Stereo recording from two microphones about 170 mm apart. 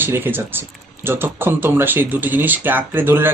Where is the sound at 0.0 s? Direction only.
10° right (ahead or behind).